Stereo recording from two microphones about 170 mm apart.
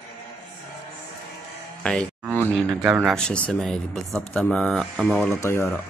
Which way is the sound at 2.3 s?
10° left (ahead or behind).